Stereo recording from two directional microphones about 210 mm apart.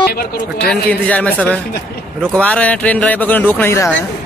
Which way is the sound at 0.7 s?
5° left (ahead or behind).